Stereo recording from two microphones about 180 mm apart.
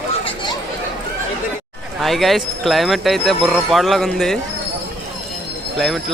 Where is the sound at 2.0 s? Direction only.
Centre (ahead or behind).